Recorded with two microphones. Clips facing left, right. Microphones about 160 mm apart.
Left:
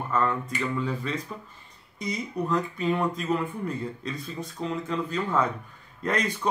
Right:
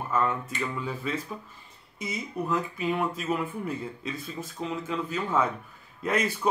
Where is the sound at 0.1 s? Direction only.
5° right (ahead or behind).